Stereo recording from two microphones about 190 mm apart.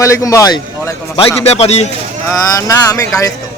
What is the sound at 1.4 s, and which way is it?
Speech, 35° left (ahead or behind).